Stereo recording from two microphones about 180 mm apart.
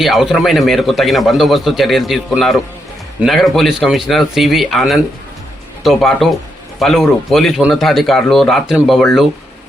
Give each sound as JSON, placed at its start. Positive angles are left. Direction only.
{"t": 0.0, "sound": "a man's voice", "side_deg": 0}